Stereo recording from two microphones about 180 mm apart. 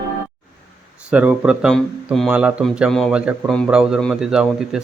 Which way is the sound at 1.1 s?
10° right (ahead or behind).